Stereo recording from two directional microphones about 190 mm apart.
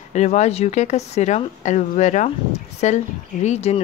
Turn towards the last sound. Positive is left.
turn(degrees=35)  # may be behind; listen again after turning